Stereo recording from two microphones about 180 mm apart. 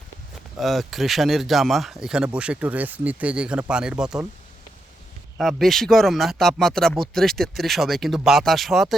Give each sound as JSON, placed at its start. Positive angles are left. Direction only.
{"t": 0.6, "sound": "speech", "side_deg": 0}
{"t": 5.4, "sound": "speech", "side_deg": 0}